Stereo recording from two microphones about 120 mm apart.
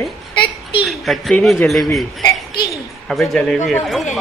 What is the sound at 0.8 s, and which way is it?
Speech, centre (ahead or behind).